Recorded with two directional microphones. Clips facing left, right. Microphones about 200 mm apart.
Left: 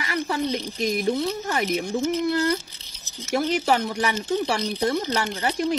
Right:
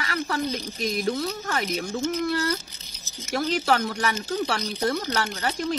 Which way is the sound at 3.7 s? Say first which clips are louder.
Left 1 dB; 20° left (ahead or behind).